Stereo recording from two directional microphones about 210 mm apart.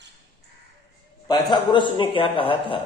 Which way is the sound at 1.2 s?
20° left (ahead or behind).